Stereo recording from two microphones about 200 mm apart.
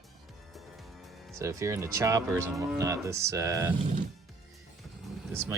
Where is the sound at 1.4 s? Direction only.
15° right (ahead or behind).